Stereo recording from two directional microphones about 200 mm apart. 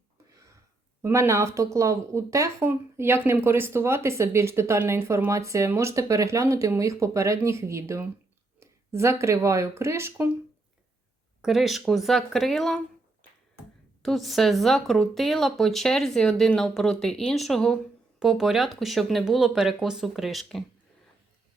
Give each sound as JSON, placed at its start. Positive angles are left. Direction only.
{"t": 0.3, "sound": "a sound", "side_deg": -15}
{"t": 1.0, "sound": "speech", "side_deg": -15}
{"t": 11.4, "sound": "speech", "side_deg": 0}
{"t": 14.0, "sound": "speech", "side_deg": 0}